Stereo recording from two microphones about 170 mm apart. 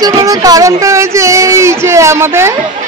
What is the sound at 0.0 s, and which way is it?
Speech, 20° right (ahead or behind).